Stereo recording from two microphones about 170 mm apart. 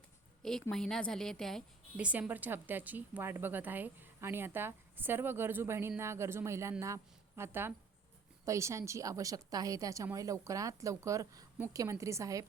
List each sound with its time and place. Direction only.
0.7 s a woman's voice: centre (ahead or behind); by 12.5 s 20° right (ahead or behind)